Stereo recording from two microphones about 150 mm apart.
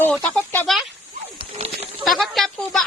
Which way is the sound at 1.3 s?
40° right (ahead or behind).